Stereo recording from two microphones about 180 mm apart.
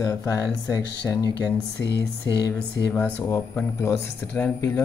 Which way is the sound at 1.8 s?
75° left (ahead or behind).